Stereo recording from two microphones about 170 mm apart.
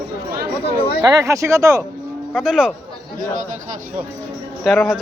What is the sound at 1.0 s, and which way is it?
Speech, 20° right (ahead or behind).